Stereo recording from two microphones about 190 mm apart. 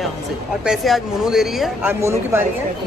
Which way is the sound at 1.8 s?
15° right (ahead or behind).